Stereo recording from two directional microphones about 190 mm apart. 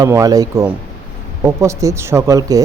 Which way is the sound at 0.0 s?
20° right (ahead or behind).